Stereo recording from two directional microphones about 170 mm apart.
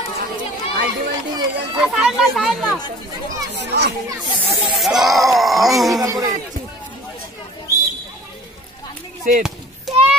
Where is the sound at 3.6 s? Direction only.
80° right.